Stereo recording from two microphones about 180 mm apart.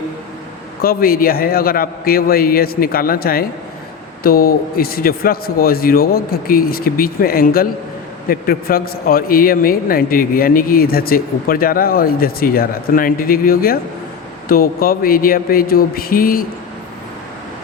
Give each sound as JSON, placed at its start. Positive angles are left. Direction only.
{"t": 0.8, "sound": "a man's voice", "side_deg": 55}